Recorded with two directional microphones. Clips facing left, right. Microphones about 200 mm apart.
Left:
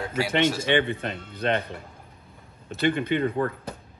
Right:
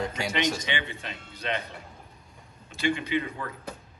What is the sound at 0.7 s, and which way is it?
Speech, 55° left (ahead or behind).